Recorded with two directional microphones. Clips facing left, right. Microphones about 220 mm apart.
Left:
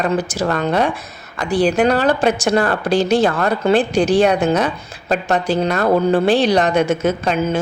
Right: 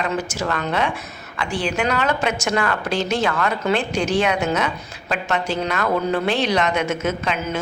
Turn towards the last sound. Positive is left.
turn(degrees=35)  # may be behind; listen again after turning